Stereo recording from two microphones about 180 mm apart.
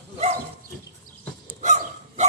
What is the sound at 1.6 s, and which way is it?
Dog, 40° right (ahead or behind).